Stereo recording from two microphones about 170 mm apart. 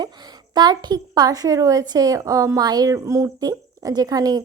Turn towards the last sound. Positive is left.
turn(degrees=-20)  # may be behind; listen again after turning